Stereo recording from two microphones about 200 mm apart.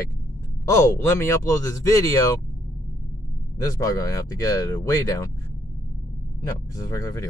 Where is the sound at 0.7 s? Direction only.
15° left (ahead or behind).